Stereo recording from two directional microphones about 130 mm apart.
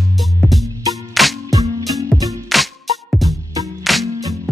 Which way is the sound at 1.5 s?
25° right (ahead or behind).